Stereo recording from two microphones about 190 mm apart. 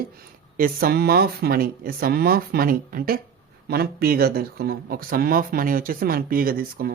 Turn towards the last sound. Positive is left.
turn(degrees=-50)  # may be behind; listen again after turning